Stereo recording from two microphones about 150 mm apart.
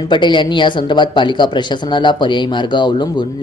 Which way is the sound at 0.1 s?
30° left (ahead or behind).